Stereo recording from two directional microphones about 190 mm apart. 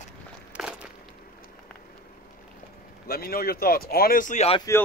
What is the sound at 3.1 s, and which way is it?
Speech, 50° left (ahead or behind).